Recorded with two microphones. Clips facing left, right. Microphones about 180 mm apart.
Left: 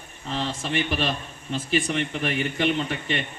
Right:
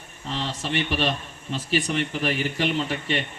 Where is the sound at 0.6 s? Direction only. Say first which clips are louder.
Right 2 dB; 35° right (ahead or behind).